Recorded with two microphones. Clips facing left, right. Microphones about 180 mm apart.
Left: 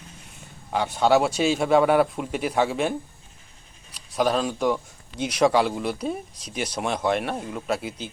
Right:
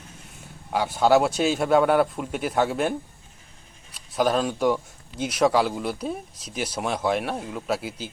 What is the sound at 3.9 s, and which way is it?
Speech, centre (ahead or behind).